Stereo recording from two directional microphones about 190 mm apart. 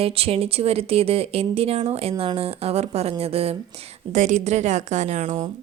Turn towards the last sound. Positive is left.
turn(degrees=-40)  # may be behind; listen again after turning